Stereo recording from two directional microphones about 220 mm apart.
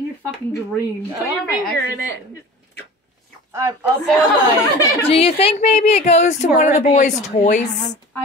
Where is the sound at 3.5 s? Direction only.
10° right (ahead or behind).